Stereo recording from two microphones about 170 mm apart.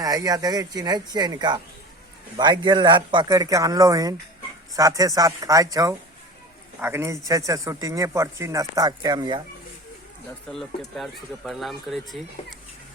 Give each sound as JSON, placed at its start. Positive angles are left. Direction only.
{"t": 0.0, "sound": "a man's voice", "side_deg": -20}
{"t": 10.5, "sound": "speech", "side_deg": 0}